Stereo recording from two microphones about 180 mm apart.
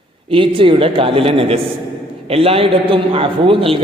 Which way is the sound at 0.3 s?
30° right (ahead or behind).